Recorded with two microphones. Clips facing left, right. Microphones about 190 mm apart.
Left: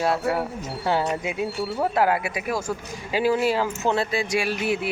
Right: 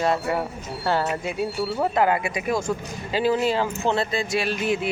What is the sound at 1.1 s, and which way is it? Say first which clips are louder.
Speech: even; 15° left (ahead or behind).